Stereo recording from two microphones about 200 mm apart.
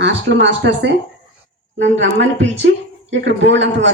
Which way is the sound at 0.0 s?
60° right (ahead or behind).